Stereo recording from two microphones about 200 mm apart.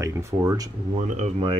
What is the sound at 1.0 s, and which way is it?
Speech, 35° right (ahead or behind).